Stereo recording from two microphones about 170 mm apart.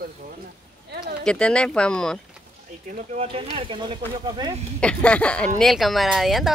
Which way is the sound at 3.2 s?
35° right (ahead or behind).